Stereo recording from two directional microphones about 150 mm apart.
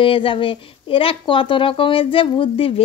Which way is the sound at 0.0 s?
35° left (ahead or behind).